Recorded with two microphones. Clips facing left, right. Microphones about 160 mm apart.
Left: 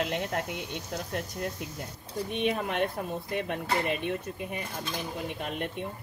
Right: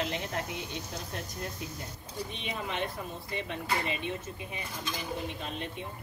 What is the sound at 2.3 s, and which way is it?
Speech, 55° left (ahead or behind).